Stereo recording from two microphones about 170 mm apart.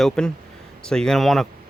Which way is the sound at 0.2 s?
5° left (ahead or behind).